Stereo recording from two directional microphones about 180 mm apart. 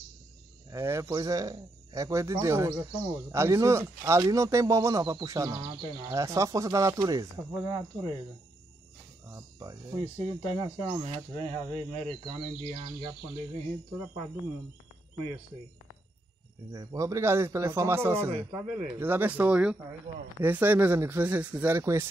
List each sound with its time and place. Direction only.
0.7 s speech: 15° right (ahead or behind)
9.3 s speech: 20° right (ahead or behind)
16.7 s speech: 20° right (ahead or behind)